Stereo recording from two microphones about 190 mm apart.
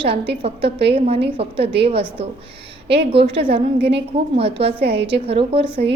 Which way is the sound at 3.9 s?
30° right (ahead or behind).